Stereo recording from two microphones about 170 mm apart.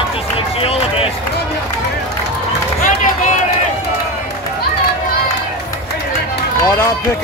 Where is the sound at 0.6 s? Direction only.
35° left (ahead or behind).